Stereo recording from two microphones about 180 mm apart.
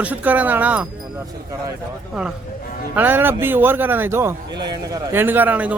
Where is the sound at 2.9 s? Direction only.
10° right (ahead or behind).